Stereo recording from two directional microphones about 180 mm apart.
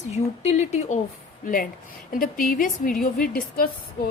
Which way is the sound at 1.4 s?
50° left (ahead or behind).